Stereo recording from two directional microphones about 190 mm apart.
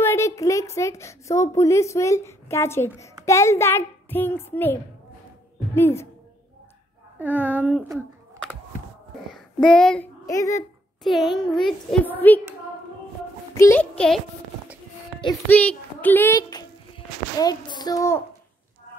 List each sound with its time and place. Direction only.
0.0 s a woman's voice: 15° left (ahead or behind)
5.8 s a child's voice: 15° left (ahead or behind)
7.2 s speech: 10° right (ahead or behind)
9.3 s child singing: 5° left (ahead or behind)
10.2 s a child's voice: 15° left (ahead or behind)
11.1 s a child's voice: centre (ahead or behind)
13.6 s a child's voice: 10° left (ahead or behind)
15.4 s a child's voice: 10° left (ahead or behind)